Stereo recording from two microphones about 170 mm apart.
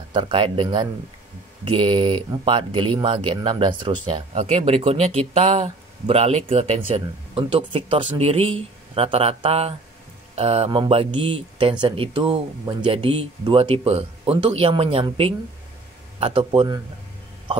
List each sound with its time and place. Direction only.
0.1 s speech: 30° right (ahead or behind)